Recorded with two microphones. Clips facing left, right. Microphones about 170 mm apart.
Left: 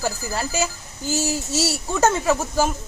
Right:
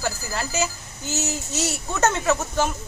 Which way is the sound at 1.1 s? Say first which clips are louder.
Left 4 dB; 35° left (ahead or behind).